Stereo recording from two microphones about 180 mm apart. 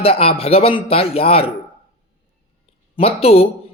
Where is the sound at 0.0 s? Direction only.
35° left (ahead or behind).